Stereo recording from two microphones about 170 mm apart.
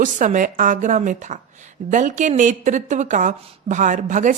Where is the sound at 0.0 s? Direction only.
50° right (ahead or behind).